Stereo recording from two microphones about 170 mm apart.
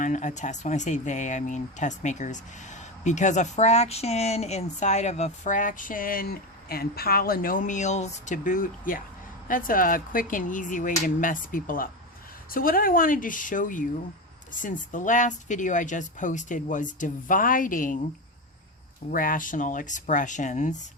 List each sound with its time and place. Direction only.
0.0 s speech: 45° left (ahead or behind)
19.1 s speech: 55° left (ahead or behind)